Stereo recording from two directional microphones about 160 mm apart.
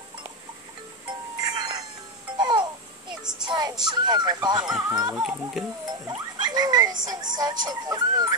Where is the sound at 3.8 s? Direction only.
25° right (ahead or behind).